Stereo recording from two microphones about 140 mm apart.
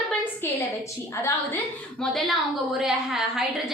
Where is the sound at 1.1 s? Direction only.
20° left (ahead or behind).